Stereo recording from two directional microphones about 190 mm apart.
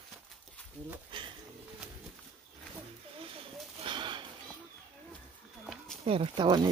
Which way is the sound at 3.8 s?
25° right (ahead or behind).